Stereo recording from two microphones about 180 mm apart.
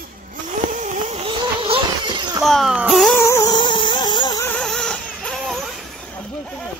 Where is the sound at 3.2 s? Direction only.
20° left (ahead or behind).